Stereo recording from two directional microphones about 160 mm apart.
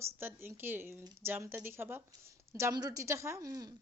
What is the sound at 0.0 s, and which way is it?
A woman's voice, 15° right (ahead or behind).